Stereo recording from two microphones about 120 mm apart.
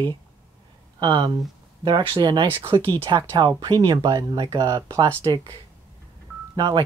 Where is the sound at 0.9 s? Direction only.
40° right (ahead or behind).